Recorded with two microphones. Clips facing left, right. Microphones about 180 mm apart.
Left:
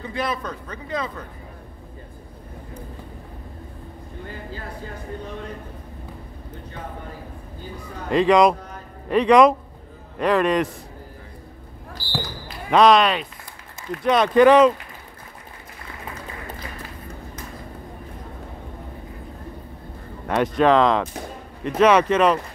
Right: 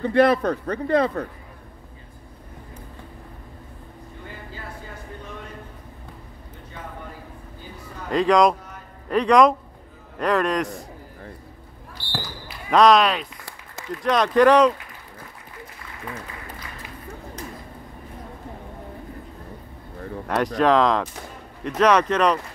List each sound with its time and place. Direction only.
0.0 s speech: 65° right (ahead or behind)
8.1 s speech: 5° left (ahead or behind)
12.0 s basketball bounce: centre (ahead or behind)
12.7 s speech: centre (ahead or behind)
20.2 s speech: centre (ahead or behind)